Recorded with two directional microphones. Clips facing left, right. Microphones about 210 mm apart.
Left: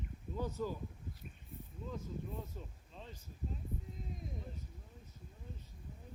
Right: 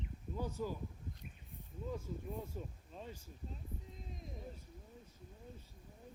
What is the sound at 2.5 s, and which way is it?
Speech, 10° right (ahead or behind).